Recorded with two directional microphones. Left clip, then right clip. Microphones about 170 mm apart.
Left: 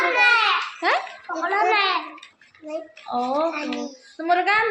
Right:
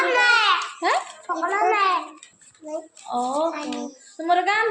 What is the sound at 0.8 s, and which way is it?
Babbling, centre (ahead or behind).